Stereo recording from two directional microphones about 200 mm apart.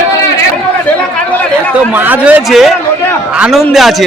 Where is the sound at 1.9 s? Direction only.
10° right (ahead or behind).